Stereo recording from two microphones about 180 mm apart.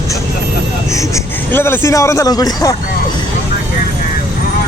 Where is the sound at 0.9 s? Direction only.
15° left (ahead or behind).